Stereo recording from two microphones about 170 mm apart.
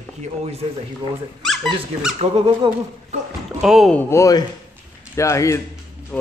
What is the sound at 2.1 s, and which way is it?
Speech, 35° right (ahead or behind).